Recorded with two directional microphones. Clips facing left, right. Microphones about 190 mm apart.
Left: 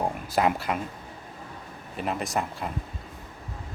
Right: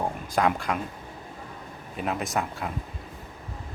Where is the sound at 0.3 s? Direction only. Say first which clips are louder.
Even; 5° left (ahead or behind).